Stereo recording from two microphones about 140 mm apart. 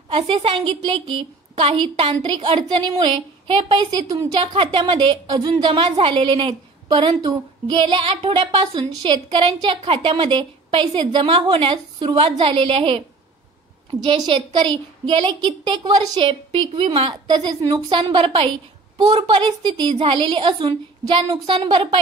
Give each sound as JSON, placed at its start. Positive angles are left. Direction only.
{"t": 0.1, "sound": "a woman's voice", "side_deg": -45}
{"t": 14.0, "sound": "a woman's voice", "side_deg": -40}